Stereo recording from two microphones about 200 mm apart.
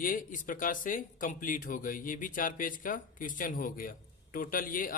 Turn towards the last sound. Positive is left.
turn(degrees=45)  # may be behind; listen again after turning